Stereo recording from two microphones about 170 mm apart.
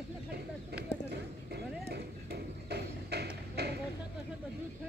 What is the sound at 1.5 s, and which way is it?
Horse, 70° right (ahead or behind).